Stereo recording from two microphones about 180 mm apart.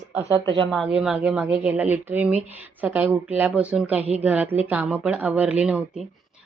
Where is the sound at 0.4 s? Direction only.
25° right (ahead or behind).